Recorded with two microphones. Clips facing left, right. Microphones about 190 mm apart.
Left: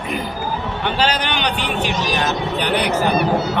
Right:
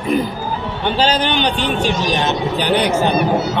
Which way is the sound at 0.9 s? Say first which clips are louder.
Right 5 dB; 30° right (ahead or behind).